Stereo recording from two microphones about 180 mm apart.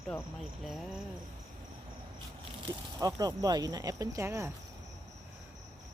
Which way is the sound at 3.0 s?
20° right (ahead or behind).